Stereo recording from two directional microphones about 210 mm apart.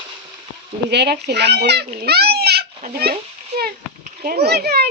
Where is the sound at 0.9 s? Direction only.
50° right (ahead or behind).